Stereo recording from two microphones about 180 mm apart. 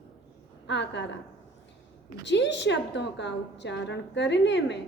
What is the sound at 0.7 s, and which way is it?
Speech, 75° left (ahead or behind).